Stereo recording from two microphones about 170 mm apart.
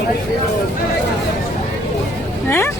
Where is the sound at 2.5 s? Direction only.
15° left (ahead or behind).